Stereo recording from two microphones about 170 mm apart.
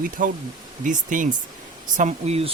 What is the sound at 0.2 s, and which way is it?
Speech, 50° right (ahead or behind).